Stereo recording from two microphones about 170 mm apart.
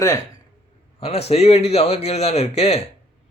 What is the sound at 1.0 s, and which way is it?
A man's voice, 35° left (ahead or behind).